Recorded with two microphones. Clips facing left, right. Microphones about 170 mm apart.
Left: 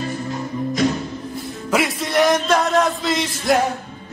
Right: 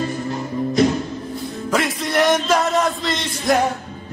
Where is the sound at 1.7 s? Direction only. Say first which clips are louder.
Left 1 dB; centre (ahead or behind).